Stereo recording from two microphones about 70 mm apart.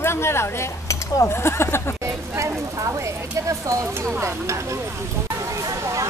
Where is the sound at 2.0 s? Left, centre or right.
Right.